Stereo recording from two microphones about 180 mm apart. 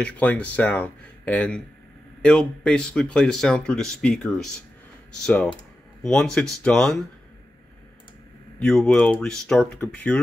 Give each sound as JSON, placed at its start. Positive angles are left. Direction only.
{"t": 0.0, "sound": "speech", "side_deg": 10}
{"t": 8.5, "sound": "speech", "side_deg": 5}